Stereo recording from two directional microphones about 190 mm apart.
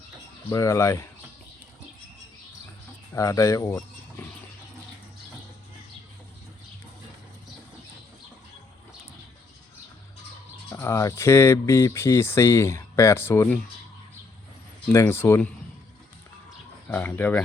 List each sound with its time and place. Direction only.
0.5 s speech: 15° left (ahead or behind)
3.2 s speech: 15° left (ahead or behind)
10.7 s speech: 15° left (ahead or behind)
14.9 s speech: 10° left (ahead or behind)
16.9 s speech: 10° left (ahead or behind)